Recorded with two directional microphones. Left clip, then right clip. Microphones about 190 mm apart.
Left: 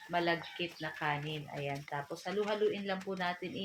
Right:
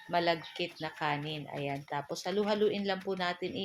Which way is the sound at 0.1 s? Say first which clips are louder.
Right 3 dB; 35° right (ahead or behind).